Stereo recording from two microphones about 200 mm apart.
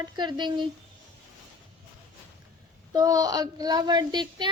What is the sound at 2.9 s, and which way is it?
Speech, 20° right (ahead or behind).